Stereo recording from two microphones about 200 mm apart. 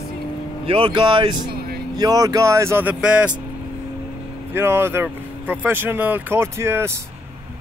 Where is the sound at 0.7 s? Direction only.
25° right (ahead or behind); by 3.3 s 5° right (ahead or behind).